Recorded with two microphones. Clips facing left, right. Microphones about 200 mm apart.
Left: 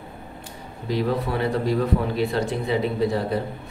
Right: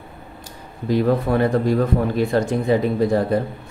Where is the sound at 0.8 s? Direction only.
50° right (ahead or behind).